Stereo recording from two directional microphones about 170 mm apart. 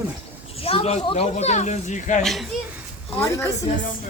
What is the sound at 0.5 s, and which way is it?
Speech, 35° left (ahead or behind).